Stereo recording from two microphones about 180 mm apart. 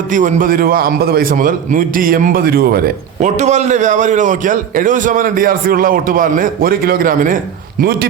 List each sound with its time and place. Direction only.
0.1 s a man's voice: 45° right (ahead or behind)